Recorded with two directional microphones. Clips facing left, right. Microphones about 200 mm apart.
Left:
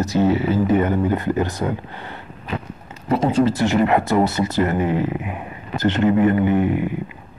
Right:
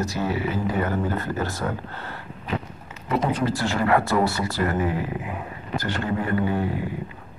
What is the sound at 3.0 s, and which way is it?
Speech, 25° left (ahead or behind).